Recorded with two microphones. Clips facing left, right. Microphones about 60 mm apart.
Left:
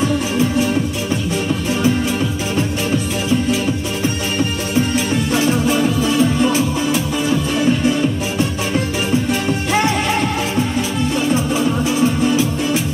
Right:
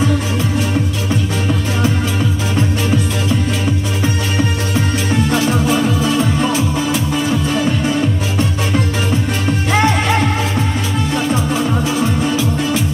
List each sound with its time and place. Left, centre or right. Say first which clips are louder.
5.8 s music: even; centre
6.4 s music: even; right
9.7 s music: right 3 dB; right